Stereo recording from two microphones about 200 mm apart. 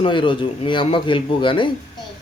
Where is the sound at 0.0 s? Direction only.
25° left (ahead or behind).